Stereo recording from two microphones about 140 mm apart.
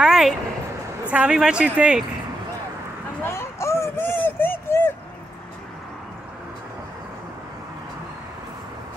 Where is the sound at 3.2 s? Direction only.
20° left (ahead or behind).